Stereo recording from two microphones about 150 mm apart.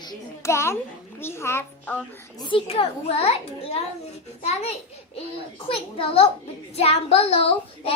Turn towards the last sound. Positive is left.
turn(degrees=40)  # may be behind; listen again after turning